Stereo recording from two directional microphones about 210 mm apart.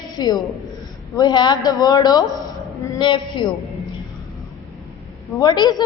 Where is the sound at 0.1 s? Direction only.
20° left (ahead or behind).